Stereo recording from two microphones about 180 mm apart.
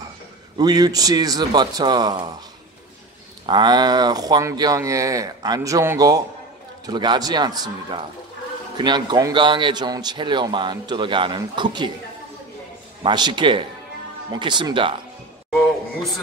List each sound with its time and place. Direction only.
0.6 s speech: 20° right (ahead or behind)
3.4 s speech: 25° right (ahead or behind)
13.0 s speech: 25° right (ahead or behind)